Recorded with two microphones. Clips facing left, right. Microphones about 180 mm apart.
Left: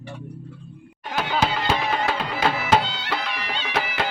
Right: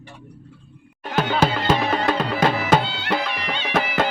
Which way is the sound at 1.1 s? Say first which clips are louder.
Right 3 dB; 45° right (ahead or behind).